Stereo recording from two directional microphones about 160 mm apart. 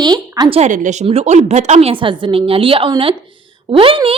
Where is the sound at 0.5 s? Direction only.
50° right (ahead or behind).